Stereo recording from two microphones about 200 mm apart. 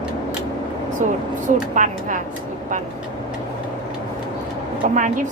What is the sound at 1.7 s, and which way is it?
Speech, 40° right (ahead or behind).